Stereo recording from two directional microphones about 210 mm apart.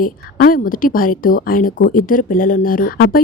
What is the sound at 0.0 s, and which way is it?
A woman's voice, 40° left (ahead or behind).